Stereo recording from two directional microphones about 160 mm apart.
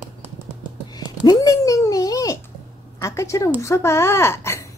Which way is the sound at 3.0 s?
20° left (ahead or behind).